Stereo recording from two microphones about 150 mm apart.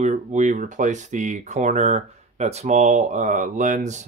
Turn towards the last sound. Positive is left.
turn(degrees=-55)  # may be behind; listen again after turning